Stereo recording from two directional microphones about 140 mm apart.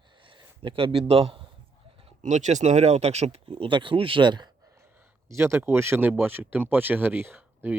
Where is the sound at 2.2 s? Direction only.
60° right (ahead or behind).